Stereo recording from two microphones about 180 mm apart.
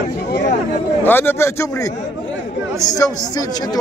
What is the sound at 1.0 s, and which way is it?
Speech, 10° left (ahead or behind).